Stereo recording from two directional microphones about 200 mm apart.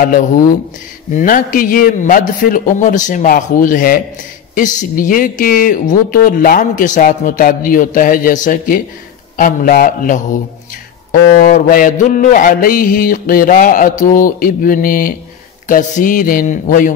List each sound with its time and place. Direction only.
0.0 s a man's voice: 45° left (ahead or behind)